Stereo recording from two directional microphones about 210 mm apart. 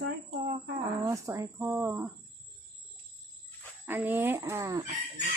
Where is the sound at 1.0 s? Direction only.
15° right (ahead or behind).